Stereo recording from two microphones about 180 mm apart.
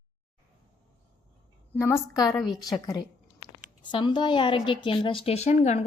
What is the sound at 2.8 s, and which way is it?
A woman's voice, 20° left (ahead or behind).